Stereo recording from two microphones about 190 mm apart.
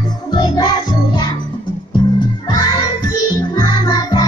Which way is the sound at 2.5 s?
20° left (ahead or behind).